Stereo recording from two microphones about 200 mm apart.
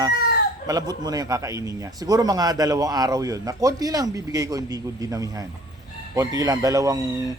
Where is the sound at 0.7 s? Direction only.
20° right (ahead or behind).